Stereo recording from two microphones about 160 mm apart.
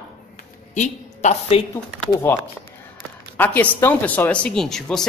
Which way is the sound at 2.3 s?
10° left (ahead or behind).